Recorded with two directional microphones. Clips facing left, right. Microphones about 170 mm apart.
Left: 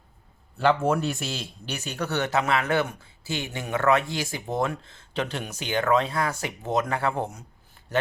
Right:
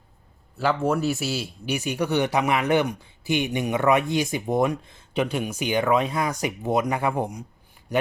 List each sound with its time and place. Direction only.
0.5 s a man's voice: centre (ahead or behind)